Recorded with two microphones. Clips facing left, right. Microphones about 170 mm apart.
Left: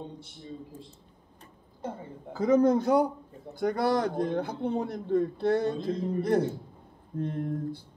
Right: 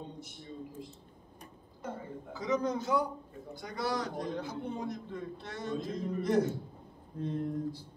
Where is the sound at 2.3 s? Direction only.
55° left (ahead or behind).